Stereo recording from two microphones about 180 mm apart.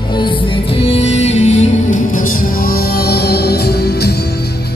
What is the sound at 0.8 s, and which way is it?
Music, 35° left (ahead or behind).